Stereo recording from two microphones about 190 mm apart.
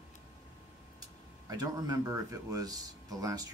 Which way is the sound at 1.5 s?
20° right (ahead or behind).